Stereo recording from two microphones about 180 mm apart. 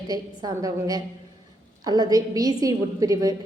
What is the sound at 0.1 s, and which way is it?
Speech, 20° right (ahead or behind).